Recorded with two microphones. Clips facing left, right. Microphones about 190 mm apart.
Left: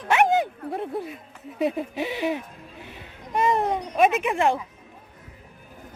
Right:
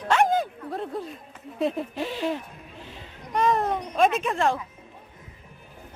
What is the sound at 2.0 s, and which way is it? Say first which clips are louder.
Speech: left 2 dB; 15° left (ahead or behind).